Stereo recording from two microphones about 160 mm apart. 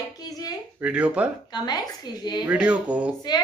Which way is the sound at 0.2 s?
25° left (ahead or behind).